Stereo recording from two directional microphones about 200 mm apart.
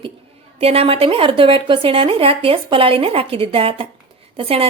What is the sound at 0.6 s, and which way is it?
Speech, 30° right (ahead or behind).